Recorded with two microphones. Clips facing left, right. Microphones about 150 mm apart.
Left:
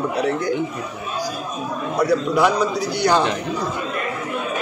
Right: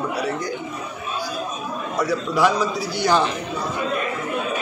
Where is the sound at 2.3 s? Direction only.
15° left (ahead or behind).